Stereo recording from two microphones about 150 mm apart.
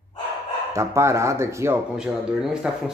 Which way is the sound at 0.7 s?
20° right (ahead or behind).